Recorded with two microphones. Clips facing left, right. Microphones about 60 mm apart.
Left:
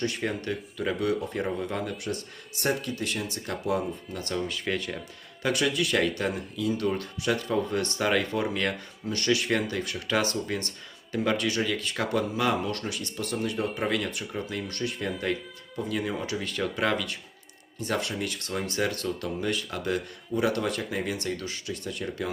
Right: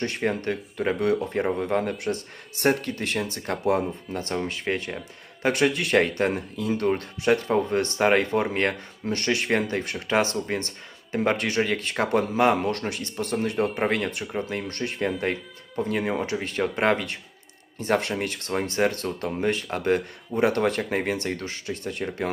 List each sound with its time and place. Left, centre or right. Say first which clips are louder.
0.0 s speech: right 4 dB; right
15.2 s music: right 2 dB; right
15.8 s speech: right 5 dB; right